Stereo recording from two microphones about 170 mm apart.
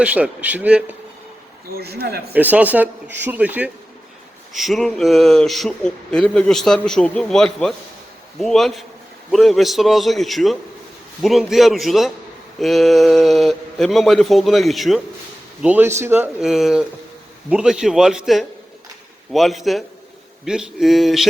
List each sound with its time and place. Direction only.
0.0 s speech: 10° right (ahead or behind)
1.7 s speech: 70° right (ahead or behind)
2.3 s speech: 10° right (ahead or behind)
15.6 s speech: 10° right (ahead or behind)